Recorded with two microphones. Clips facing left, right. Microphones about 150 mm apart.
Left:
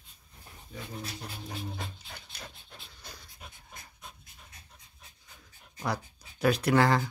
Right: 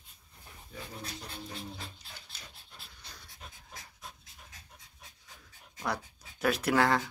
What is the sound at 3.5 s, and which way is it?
Pant, 90° right.